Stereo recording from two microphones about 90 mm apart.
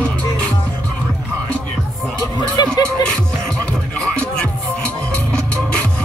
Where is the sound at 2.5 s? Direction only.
50° left (ahead or behind).